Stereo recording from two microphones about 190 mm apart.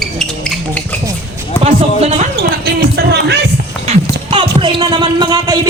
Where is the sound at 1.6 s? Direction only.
35° right (ahead or behind).